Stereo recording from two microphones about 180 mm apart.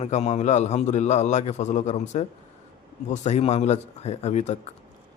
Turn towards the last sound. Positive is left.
turn(degrees=40)  # may be behind; listen again after turning